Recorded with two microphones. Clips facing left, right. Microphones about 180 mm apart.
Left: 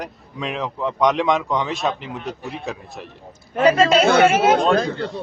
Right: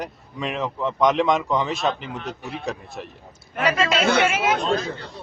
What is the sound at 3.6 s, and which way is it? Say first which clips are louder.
A man's voice: left 7 dB; 35° left (ahead or behind).